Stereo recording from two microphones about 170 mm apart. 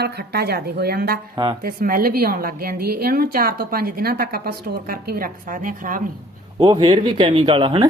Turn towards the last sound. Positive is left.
turn(degrees=-30)  # may be behind; listen again after turning